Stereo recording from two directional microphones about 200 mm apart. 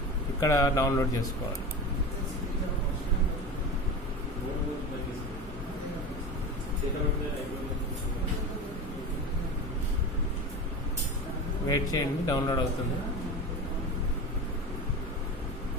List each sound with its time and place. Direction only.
0.4 s speech: 15° left (ahead or behind)
11.6 s speech: 20° left (ahead or behind)